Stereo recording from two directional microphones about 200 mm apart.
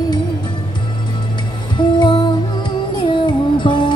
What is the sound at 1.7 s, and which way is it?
Music, 20° left (ahead or behind).